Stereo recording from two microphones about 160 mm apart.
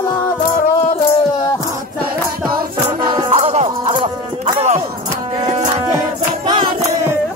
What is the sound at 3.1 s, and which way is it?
Music, 30° right (ahead or behind).